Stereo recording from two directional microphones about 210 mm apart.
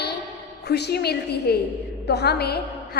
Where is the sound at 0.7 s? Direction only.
50° left (ahead or behind).